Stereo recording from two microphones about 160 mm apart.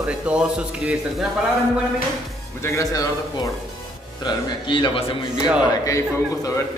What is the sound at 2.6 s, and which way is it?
A man's voice, 20° left (ahead or behind).